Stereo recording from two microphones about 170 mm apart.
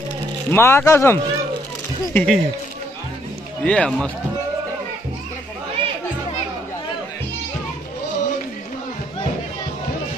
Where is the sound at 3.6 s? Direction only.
5° left (ahead or behind).